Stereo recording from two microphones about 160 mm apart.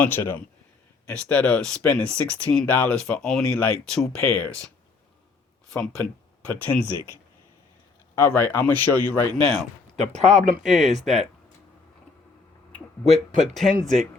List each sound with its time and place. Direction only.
0.0 s speech: 10° left (ahead or behind)
5.7 s speech: 5° left (ahead or behind)
8.1 s speech: 15° left (ahead or behind)
9.5 s speech: centre (ahead or behind)
10.1 s speech: 45° right (ahead or behind)
10.6 s speech: centre (ahead or behind)
13.1 s speech: 45° right (ahead or behind)
13.4 s speech: centre (ahead or behind)